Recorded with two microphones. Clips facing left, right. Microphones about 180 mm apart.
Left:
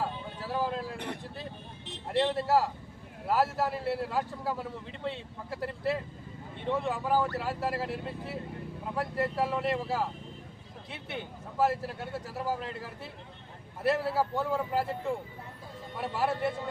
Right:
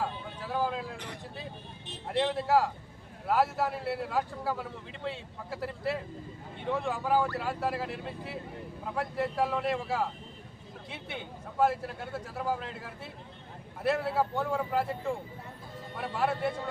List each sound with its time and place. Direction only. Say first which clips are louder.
0.0 s vehicle: even; centre (ahead or behind)
0.9 s speech: left 5 dB; 60° left (ahead or behind)
2.0 s a man's voice: left 1 dB; centre (ahead or behind)